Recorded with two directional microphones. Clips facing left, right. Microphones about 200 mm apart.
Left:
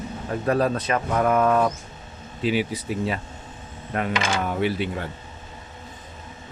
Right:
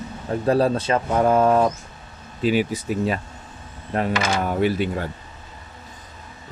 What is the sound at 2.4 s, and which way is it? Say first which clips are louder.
Speech: right 3 dB; 45° right (ahead or behind).